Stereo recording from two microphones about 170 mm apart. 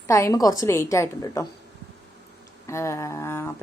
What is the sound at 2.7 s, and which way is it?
Mantra, 15° left (ahead or behind).